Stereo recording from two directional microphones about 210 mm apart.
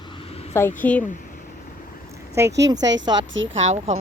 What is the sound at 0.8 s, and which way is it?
Speech, 10° left (ahead or behind).